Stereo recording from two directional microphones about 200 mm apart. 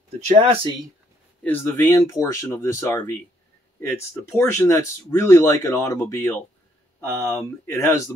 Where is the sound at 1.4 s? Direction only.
10° left (ahead or behind).